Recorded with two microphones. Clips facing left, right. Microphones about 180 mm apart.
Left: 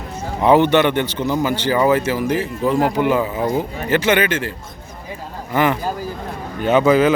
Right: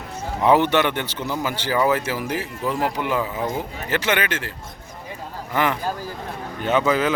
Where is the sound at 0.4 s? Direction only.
5° right (ahead or behind).